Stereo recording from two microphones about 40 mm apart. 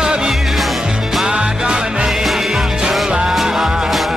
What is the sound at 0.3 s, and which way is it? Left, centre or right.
Music, centre.